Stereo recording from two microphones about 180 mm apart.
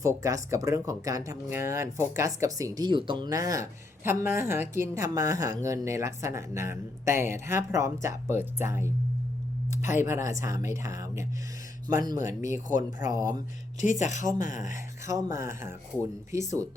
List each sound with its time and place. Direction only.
0.0 s speech: 15° right (ahead or behind)
10.0 s speech: 15° right (ahead or behind)
13.8 s speech: 40° left (ahead or behind)
15.0 s speech: 15° right (ahead or behind)